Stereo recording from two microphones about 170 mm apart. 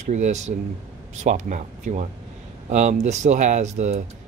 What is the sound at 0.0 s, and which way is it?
Speech, 45° right (ahead or behind).